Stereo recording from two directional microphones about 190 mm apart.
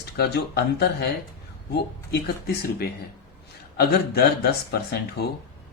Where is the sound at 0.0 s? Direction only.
55° left (ahead or behind).